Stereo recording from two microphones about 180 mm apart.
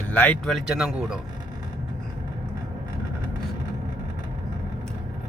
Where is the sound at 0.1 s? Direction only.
10° left (ahead or behind).